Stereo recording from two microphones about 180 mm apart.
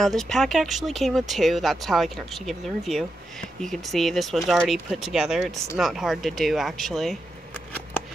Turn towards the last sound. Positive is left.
turn(degrees=10)  # may be behind; listen again after turning